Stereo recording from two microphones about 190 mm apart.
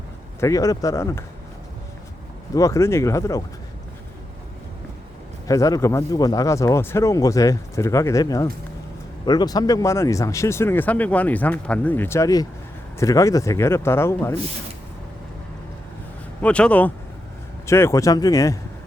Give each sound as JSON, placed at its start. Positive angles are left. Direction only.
{"t": 0.3, "sound": "speech", "side_deg": 15}
{"t": 2.6, "sound": "speech", "side_deg": 15}
{"t": 5.5, "sound": "speech", "side_deg": 15}
{"t": 16.4, "sound": "speech", "side_deg": 5}